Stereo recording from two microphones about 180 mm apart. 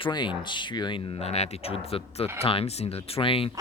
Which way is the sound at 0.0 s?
25° left (ahead or behind).